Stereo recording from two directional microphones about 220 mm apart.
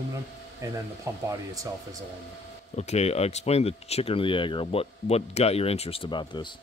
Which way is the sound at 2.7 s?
30° left (ahead or behind).